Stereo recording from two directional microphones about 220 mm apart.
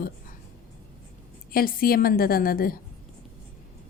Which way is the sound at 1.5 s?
40° left (ahead or behind).